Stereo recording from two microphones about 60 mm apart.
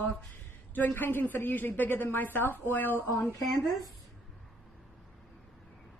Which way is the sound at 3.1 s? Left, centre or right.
Left.